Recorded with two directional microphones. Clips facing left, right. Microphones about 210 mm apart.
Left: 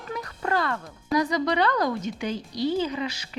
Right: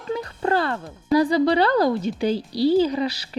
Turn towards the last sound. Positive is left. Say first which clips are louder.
# right 7 dB
turn(degrees=-35)  # may be behind; listen again after turning